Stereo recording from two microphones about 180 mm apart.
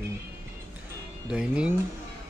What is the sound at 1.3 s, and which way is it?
Speech, 5° right (ahead or behind).